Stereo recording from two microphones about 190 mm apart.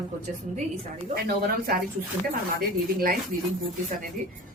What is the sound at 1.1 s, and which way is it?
Speech, 50° right (ahead or behind).